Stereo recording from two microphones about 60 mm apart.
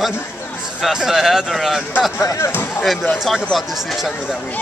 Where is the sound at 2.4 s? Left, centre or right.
Left.